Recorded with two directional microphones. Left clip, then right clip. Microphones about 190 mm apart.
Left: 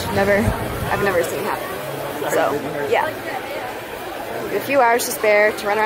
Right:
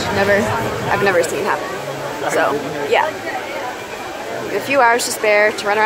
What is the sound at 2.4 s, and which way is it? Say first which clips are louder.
Speech: right 2 dB; 5° left (ahead or behind).